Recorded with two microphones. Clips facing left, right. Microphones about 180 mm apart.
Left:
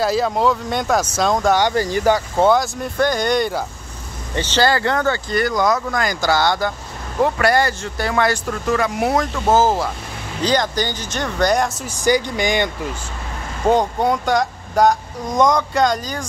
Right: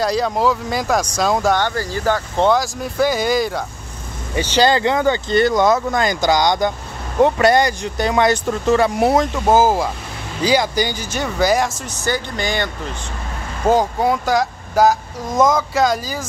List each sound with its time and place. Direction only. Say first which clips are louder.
0.0 s speech: even; centre (ahead or behind)
1.6 s speech: left 3 dB; 15° left (ahead or behind); by 3.6 s centre (ahead or behind)
4.4 s speech: right 2 dB; 15° right (ahead or behind)
11.9 s speech: left 5 dB; 15° left (ahead or behind)
13.7 s speech: right 1 dB; centre (ahead or behind)